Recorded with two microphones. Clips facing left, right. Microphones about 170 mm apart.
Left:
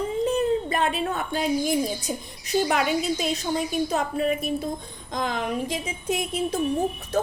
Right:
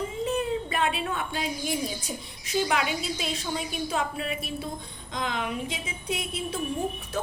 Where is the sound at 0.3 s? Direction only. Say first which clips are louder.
Left 5 dB; 40° left (ahead or behind).